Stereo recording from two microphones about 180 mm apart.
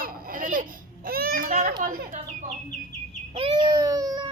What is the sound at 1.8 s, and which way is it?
Bird, 50° right (ahead or behind).